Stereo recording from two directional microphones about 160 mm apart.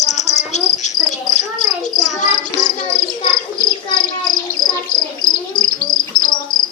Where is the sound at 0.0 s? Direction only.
45° left (ahead or behind).